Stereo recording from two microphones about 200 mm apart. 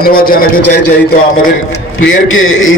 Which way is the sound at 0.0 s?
45° left (ahead or behind).